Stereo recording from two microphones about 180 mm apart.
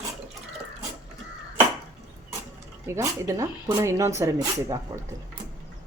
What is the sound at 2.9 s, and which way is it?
Speech, 15° right (ahead or behind).